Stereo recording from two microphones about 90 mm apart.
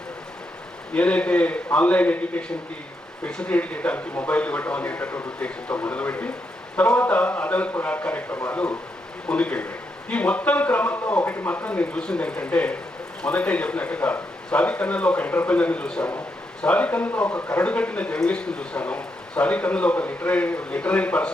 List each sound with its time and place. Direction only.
0.9 s speech: 15° left (ahead or behind)